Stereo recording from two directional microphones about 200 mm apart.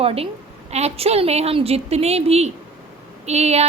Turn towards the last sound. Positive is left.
turn(degrees=-30)  # may be behind; listen again after turning